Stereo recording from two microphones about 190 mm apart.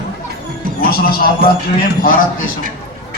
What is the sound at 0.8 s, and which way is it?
Speech, 50° left (ahead or behind).